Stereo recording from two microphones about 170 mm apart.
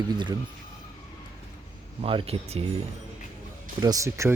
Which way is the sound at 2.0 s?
35° right (ahead or behind).